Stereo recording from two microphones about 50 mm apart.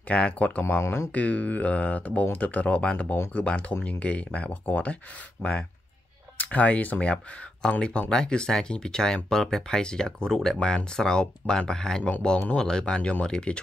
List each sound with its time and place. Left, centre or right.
0.1 s speech: left
0.7 s speech: left
1.1 s speech: left
7.6 s speech: centre